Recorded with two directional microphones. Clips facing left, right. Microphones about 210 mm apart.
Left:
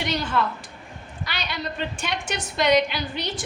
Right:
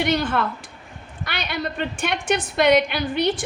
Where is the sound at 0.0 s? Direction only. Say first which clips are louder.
Right 4 dB; 55° right (ahead or behind).